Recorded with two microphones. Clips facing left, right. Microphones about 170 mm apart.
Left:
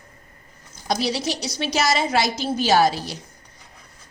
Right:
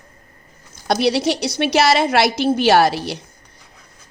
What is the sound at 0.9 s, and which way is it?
A woman's voice, 65° right (ahead or behind).